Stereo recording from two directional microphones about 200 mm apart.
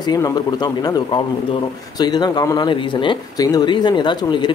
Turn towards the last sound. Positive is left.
turn(degrees=20)  # may be behind; listen again after turning